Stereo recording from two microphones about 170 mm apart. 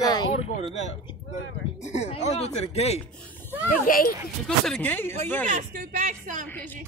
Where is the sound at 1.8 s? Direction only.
40° left (ahead or behind).